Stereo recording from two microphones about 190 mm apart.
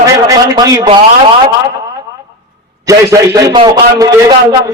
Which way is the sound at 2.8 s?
15° right (ahead or behind).